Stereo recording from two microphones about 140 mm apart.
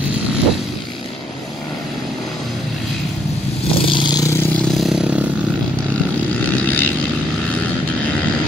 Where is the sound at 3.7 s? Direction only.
40° left (ahead or behind); by 4.5 s 20° left (ahead or behind).